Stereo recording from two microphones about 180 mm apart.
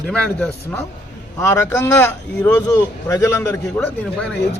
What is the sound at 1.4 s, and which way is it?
A man's voice, 20° left (ahead or behind).